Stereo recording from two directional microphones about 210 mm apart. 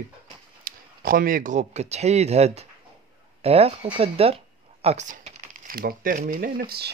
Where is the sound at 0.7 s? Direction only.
40° right (ahead or behind).